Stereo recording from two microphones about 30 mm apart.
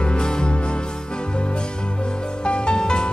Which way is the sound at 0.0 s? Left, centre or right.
Left.